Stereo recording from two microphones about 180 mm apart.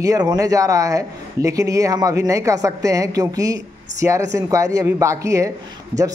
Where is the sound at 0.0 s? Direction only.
20° right (ahead or behind).